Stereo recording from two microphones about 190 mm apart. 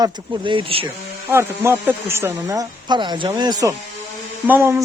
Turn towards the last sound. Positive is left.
turn(degrees=-10)  # may be behind; listen again after turning